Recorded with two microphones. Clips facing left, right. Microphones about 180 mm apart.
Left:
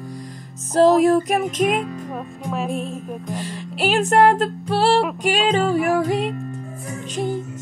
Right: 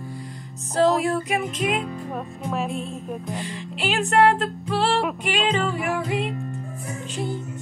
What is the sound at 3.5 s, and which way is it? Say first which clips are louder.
Music: left 7 dB; 40° left (ahead or behind).